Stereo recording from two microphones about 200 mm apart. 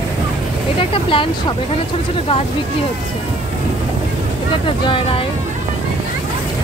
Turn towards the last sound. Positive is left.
turn(degrees=25)  # may be behind; listen again after turning